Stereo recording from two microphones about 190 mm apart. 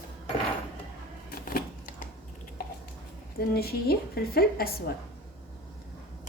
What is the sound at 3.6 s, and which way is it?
Speech, 55° left (ahead or behind).